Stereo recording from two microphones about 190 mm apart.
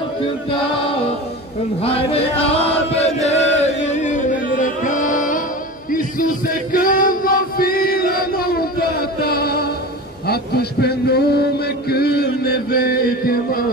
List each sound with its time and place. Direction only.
1.8 s a man's voice: 30° left (ahead or behind)
2.5 s chant: 30° left (ahead or behind)
5.9 s music: 45° left (ahead or behind)
10.2 s a sound: 55° left (ahead or behind)